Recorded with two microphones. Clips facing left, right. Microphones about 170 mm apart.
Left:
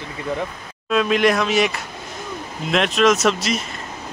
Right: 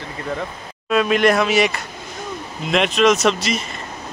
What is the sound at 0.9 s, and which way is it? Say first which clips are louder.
Speech: right 1 dB; centre (ahead or behind).